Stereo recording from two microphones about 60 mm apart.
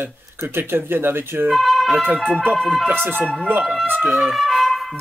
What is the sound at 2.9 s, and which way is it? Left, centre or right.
Speech, right.